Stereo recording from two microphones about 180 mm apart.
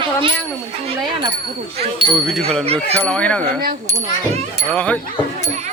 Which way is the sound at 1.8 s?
30° right (ahead or behind).